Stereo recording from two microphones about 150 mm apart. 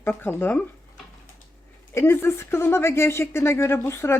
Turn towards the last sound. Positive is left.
turn(degrees=15)  # may be behind; listen again after turning